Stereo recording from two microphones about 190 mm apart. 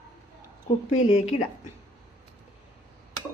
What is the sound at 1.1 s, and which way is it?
Speech, 30° left (ahead or behind).